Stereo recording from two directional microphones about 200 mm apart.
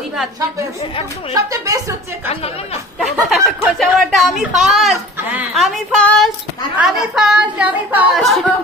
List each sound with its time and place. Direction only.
1.3 s speech: 15° right (ahead or behind)
3.3 s speech: centre (ahead or behind)